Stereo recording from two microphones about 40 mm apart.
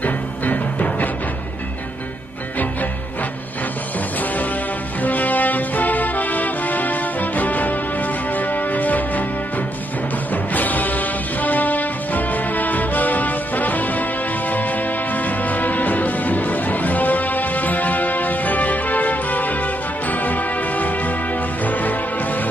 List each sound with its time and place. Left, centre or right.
0.0 s music: left
5.0 s music: left
10.3 s music: left